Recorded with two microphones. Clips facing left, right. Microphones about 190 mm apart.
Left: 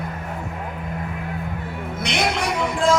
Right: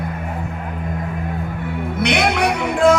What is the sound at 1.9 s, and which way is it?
Music, 60° right (ahead or behind).